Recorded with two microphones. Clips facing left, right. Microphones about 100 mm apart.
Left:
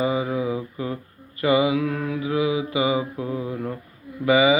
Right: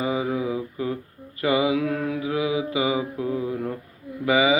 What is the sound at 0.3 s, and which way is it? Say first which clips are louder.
Mantra: left 1 dB; 15° left (ahead or behind).